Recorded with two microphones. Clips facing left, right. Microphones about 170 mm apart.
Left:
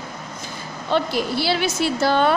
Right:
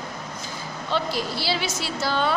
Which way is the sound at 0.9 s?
55° left (ahead or behind).